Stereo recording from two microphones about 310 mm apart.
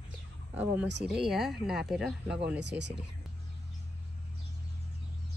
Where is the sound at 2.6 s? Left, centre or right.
Right.